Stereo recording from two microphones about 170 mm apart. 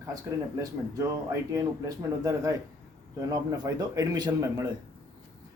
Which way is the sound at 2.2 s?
20° right (ahead or behind).